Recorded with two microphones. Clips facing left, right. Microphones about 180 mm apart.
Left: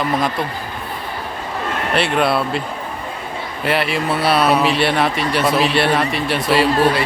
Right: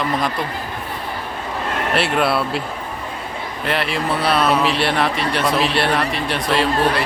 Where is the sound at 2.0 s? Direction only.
Centre (ahead or behind).